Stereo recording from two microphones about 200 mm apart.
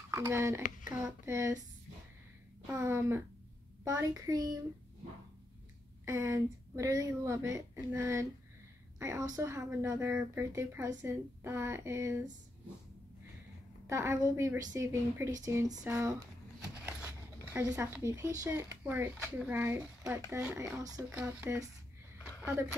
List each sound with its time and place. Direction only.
0.1 s a woman's voice: 10° right (ahead or behind)
2.6 s a woman's voice: 15° right (ahead or behind)
6.0 s a woman's voice: 15° right (ahead or behind)
13.8 s a woman's voice: 15° right (ahead or behind)
17.5 s a woman's voice: 15° right (ahead or behind)